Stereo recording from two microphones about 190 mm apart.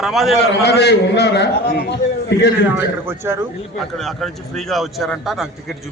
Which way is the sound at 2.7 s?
10° right (ahead or behind).